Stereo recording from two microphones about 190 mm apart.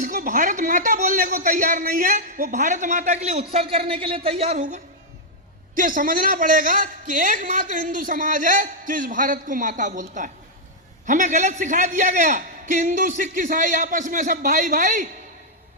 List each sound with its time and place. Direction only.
0.0 s a man's voice: 45° right (ahead or behind)